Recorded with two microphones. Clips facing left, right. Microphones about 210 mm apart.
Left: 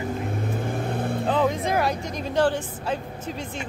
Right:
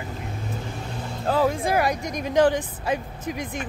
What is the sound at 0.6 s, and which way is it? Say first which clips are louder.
Vehicle: left 7 dB; 55° left (ahead or behind).